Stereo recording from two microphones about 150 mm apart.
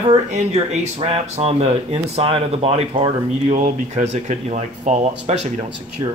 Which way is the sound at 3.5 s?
50° right (ahead or behind).